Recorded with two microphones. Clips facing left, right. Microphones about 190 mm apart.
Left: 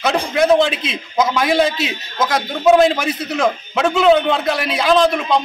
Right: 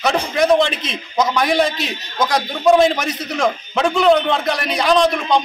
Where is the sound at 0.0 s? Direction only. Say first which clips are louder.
Left 1 dB; centre (ahead or behind).